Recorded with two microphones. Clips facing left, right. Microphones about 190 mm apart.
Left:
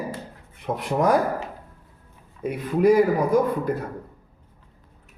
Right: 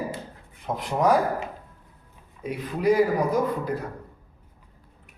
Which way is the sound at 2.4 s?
50° left (ahead or behind).